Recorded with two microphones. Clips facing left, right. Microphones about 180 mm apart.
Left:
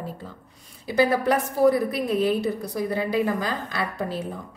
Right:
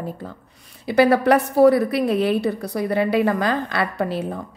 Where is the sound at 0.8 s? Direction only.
70° right (ahead or behind).